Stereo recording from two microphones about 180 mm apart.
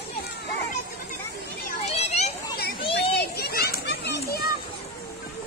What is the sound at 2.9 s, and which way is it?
Children playing, 60° left (ahead or behind).